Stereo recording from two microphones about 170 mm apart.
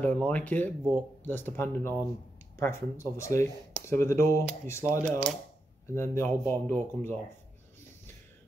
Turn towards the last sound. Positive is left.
turn(degrees=10)  # may be behind; listen again after turning